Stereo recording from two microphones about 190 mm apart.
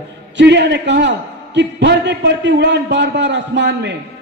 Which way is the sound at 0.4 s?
65° right (ahead or behind).